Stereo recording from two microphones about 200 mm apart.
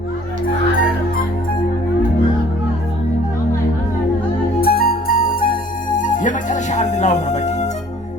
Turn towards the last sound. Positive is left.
turn(degrees=35)  # may be behind; listen again after turning